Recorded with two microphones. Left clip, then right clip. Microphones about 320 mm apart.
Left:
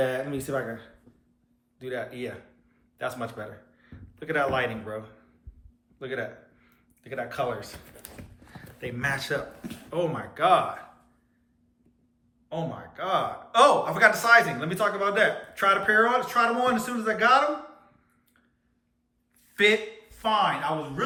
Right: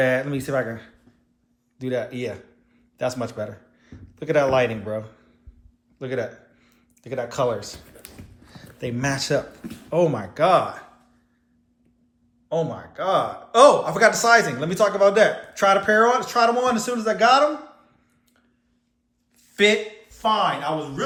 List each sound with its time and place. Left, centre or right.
0.0 s speech: right
1.8 s a man's voice: centre
6.0 s speech: centre
7.9 s a sound: centre
8.5 s speech: centre
12.5 s speech: centre
19.5 s a man's voice: centre